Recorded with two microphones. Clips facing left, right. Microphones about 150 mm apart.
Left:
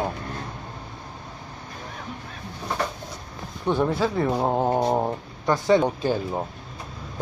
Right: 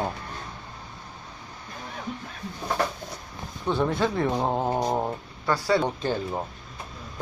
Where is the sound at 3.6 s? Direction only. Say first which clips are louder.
Left 2 dB; 10° left (ahead or behind).